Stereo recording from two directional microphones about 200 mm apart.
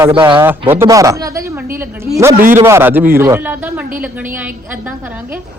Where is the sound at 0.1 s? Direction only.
25° right (ahead or behind).